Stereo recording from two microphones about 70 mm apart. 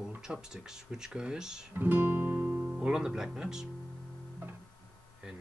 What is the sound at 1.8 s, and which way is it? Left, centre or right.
Speech, right.